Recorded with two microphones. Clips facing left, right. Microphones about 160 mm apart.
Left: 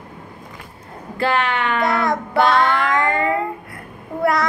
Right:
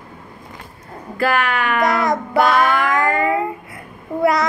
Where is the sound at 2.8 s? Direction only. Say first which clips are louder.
Right 1 dB; 25° left (ahead or behind).